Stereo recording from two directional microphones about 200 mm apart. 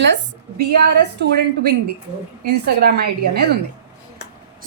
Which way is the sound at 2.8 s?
55° right (ahead or behind).